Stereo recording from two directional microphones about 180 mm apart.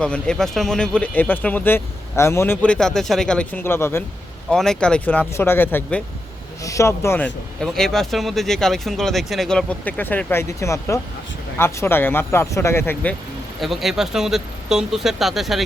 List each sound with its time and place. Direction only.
0.0 s speech: 5° left (ahead or behind)
4.4 s speech: 5° left (ahead or behind)
7.6 s speech: centre (ahead or behind)